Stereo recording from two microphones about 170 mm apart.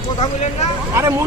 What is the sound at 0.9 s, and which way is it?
Speech, 15° right (ahead or behind).